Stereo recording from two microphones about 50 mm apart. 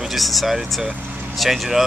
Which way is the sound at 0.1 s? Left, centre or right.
Centre.